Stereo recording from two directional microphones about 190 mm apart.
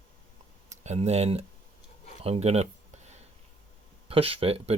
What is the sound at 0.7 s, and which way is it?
Speech, 35° right (ahead or behind).